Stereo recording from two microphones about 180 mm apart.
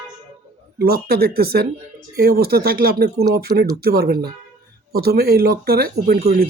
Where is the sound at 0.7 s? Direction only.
60° right (ahead or behind).